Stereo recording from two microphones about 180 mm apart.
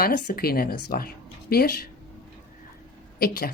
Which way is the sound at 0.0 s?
55° left (ahead or behind).